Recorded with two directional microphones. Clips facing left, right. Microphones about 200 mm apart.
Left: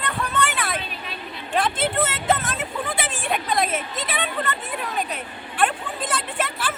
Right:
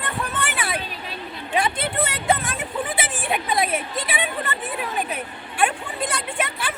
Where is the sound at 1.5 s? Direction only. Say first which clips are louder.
Even; centre (ahead or behind).